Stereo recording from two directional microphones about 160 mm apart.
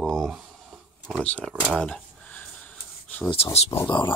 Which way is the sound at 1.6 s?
5° left (ahead or behind).